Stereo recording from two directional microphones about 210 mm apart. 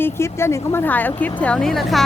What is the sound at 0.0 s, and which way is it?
A woman's voice, 10° left (ahead or behind).